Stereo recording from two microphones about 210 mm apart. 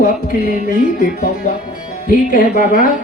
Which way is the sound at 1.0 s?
45° left (ahead or behind).